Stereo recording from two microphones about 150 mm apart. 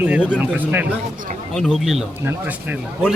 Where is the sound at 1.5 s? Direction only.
Centre (ahead or behind).